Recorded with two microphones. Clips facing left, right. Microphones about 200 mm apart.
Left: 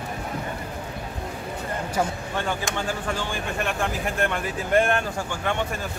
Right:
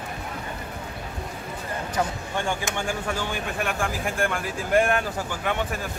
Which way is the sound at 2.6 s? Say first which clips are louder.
Even; 10° right (ahead or behind).